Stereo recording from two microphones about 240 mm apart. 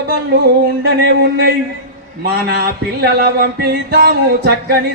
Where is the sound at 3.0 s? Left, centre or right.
Right.